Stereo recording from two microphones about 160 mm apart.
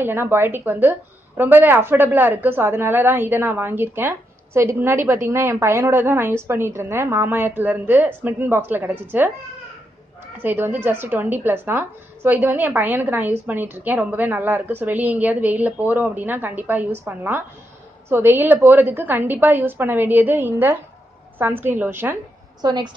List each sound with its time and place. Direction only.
0.0 s a woman's voice: 15° right (ahead or behind)
10.3 s a woman's voice: 15° right (ahead or behind)
22.6 s a woman's voice: 25° right (ahead or behind)